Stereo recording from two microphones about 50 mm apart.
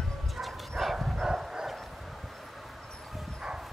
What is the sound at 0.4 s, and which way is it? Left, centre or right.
Dog, centre.